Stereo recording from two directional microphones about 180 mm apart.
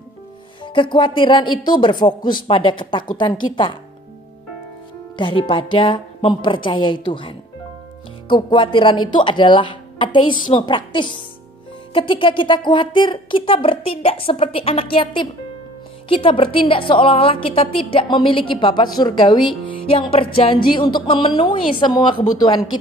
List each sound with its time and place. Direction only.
0.7 s a woman's voice: 25° left (ahead or behind)
5.1 s a woman's voice: 25° left (ahead or behind)